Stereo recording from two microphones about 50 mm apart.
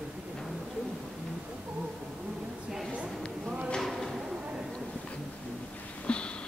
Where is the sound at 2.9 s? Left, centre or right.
Right.